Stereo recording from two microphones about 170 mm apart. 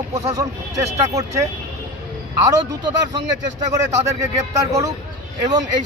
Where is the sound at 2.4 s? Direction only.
20° right (ahead or behind).